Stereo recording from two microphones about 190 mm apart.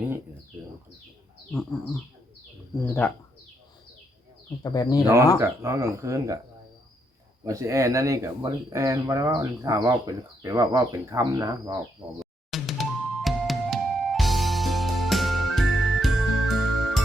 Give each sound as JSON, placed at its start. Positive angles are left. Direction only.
{"t": 2.8, "sound": "speech", "side_deg": 10}
{"t": 4.6, "sound": "speech", "side_deg": 20}
{"t": 5.0, "sound": "speech", "side_deg": -15}
{"t": 7.4, "sound": "speech", "side_deg": -15}
{"t": 12.2, "sound": "music", "side_deg": 0}